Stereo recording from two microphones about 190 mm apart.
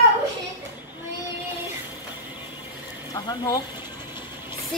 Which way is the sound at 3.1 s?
20° left (ahead or behind).